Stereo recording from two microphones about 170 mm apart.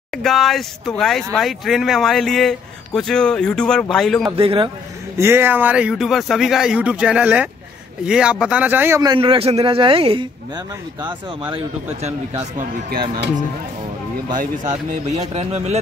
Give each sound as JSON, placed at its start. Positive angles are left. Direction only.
{"t": 0.1, "sound": "a man's voice", "side_deg": 0}
{"t": 4.4, "sound": "speech", "side_deg": -30}
{"t": 5.2, "sound": "a man's voice", "side_deg": -15}
{"t": 9.1, "sound": "speech", "side_deg": -30}
{"t": 12.5, "sound": "speech", "side_deg": -50}
{"t": 15.1, "sound": "speech", "side_deg": -40}